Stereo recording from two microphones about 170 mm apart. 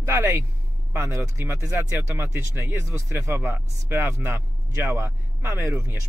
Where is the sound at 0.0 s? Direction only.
15° right (ahead or behind).